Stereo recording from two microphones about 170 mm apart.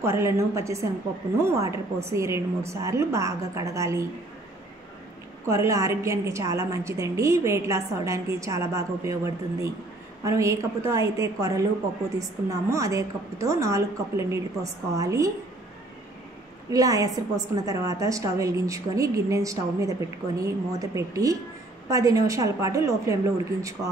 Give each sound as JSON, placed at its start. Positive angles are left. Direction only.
{"t": 0.0, "sound": "a woman's voice", "side_deg": -15}
{"t": 5.5, "sound": "a woman's voice", "side_deg": -20}
{"t": 16.7, "sound": "a woman's voice", "side_deg": -20}